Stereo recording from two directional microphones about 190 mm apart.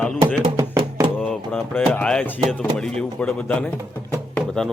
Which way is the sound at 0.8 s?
30° right (ahead or behind).